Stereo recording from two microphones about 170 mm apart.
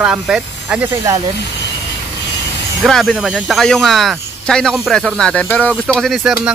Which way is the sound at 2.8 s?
Centre (ahead or behind).